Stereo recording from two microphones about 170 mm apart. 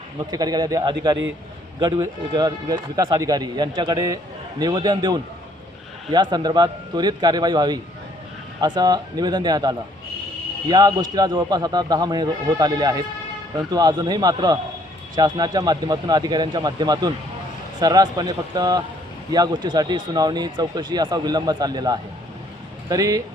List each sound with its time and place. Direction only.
0.3 s speech: 20° right (ahead or behind)